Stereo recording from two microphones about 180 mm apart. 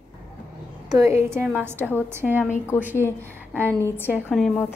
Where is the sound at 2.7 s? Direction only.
15° left (ahead or behind).